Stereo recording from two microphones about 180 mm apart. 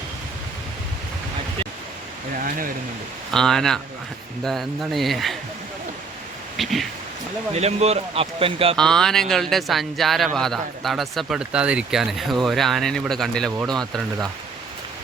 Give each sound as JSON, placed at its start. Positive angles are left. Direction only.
{"t": 2.4, "sound": "speech", "side_deg": -50}
{"t": 3.3, "sound": "speech", "side_deg": 5}
{"t": 6.6, "sound": "speech", "side_deg": 0}
{"t": 7.5, "sound": "speech", "side_deg": -35}
{"t": 8.7, "sound": "speech", "side_deg": 5}